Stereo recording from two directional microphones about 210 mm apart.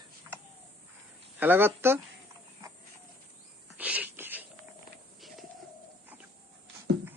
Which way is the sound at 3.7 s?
5° right (ahead or behind).